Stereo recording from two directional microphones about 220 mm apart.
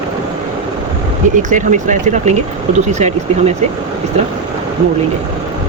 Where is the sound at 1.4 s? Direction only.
35° right (ahead or behind).